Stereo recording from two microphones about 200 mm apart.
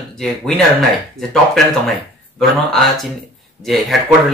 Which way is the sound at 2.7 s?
Centre (ahead or behind).